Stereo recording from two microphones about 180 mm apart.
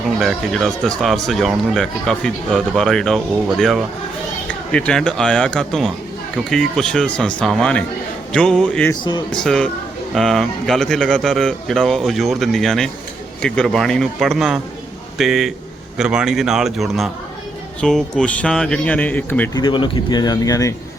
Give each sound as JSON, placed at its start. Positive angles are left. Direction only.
{"t": 0.2, "sound": "speech", "side_deg": 0}
{"t": 8.9, "sound": "speech", "side_deg": 25}
{"t": 9.4, "sound": "speech", "side_deg": 5}
{"t": 19.5, "sound": "speech", "side_deg": 25}